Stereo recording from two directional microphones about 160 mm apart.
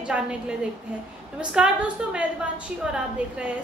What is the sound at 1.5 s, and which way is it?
Speech, 5° right (ahead or behind).